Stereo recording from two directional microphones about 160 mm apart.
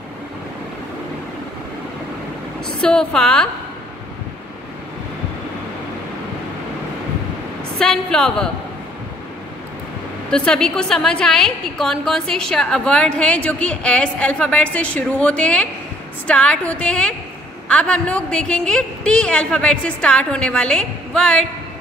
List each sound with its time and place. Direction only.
2.8 s a woman's voice: 5° left (ahead or behind)
7.8 s a woman's voice: 5° left (ahead or behind)
10.3 s a woman's voice: 5° left (ahead or behind)